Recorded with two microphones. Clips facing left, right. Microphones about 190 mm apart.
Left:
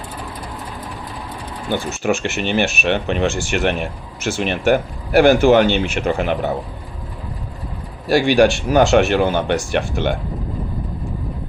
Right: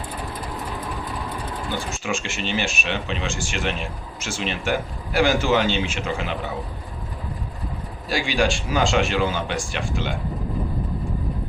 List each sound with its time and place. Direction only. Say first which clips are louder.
1.7 s speech: left 10 dB; 65° left (ahead or behind)
8.1 s speech: left 9 dB; 65° left (ahead or behind)